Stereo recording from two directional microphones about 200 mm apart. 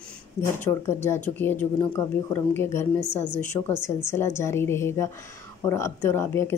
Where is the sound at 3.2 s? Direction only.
40° right (ahead or behind).